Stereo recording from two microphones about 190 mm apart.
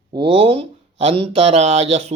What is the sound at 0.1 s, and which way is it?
Speech, 25° right (ahead or behind).